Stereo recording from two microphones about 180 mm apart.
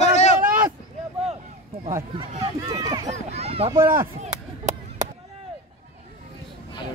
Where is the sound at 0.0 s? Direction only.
40° left (ahead or behind).